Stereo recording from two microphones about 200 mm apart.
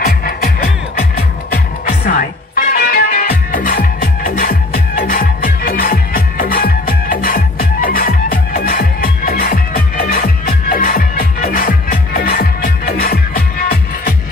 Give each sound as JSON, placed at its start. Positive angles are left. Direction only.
{"t": 0.0, "sound": "music", "side_deg": 50}
{"t": 1.9, "sound": "music", "side_deg": 45}